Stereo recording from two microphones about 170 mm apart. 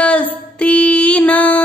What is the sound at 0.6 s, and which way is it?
Music, 5° left (ahead or behind).